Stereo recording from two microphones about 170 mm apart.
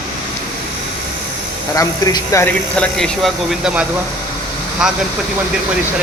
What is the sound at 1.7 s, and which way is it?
Speech, 20° left (ahead or behind).